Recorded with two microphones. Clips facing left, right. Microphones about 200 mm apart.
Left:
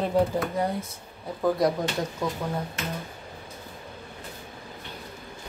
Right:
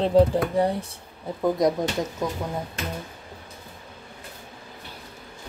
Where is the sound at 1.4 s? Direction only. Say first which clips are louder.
Right 2 dB; 20° right (ahead or behind).